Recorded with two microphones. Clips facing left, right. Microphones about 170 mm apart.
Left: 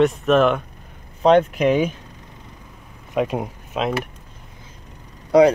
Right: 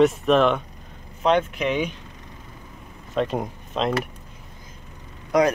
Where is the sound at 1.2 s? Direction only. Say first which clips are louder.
Left 6 dB; 40° left (ahead or behind).